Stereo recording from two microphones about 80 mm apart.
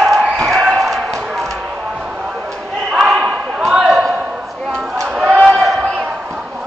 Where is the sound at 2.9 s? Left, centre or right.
Centre.